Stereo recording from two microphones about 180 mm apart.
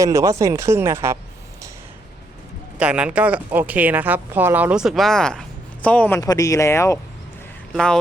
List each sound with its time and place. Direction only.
0.0 s speech: 15° right (ahead or behind)
2.7 s speech: 5° right (ahead or behind)
6.1 s speech: 20° left (ahead or behind)
7.7 s speech: 5° left (ahead or behind)